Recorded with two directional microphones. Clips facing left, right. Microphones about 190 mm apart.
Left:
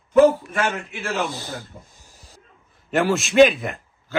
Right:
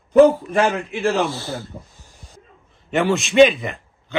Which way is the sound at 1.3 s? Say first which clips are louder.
Right 4 dB; 15° left (ahead or behind).